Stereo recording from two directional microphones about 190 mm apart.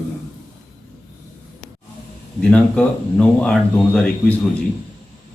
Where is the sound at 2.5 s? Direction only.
5° left (ahead or behind).